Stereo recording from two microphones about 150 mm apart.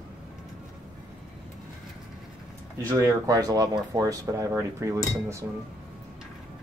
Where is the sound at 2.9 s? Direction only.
20° right (ahead or behind).